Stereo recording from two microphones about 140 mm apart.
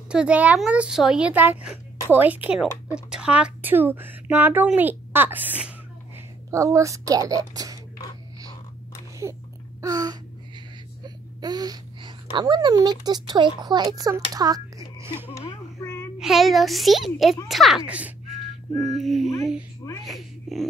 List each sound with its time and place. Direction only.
0.1 s speech: 5° right (ahead or behind); by 7.8 s 25° right (ahead or behind)
9.2 s speech: 20° right (ahead or behind)
9.8 s gasp: 25° right (ahead or behind)
11.1 s speech: 30° right (ahead or behind)
14.3 s a sound: 25° right (ahead or behind)
15.2 s a sound: 20° left (ahead or behind)
16.2 s a child's voice: centre (ahead or behind)
18.8 s a child's voice: centre (ahead or behind)